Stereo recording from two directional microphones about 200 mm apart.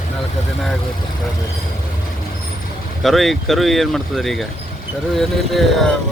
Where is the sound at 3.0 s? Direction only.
Centre (ahead or behind).